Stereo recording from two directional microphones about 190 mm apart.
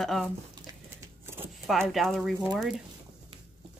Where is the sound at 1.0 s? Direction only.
10° right (ahead or behind).